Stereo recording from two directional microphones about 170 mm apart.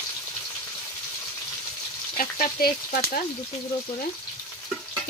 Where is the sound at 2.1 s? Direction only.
55° left (ahead or behind).